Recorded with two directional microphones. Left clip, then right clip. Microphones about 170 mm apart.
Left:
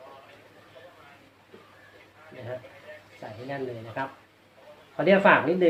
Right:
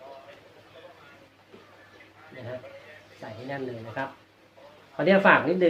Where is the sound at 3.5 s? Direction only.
5° left (ahead or behind).